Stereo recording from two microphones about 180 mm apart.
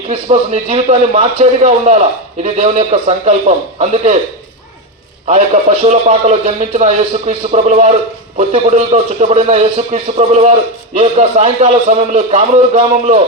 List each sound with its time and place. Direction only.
0.1 s a man's voice: 35° right (ahead or behind)
5.2 s a man's voice: 35° right (ahead or behind)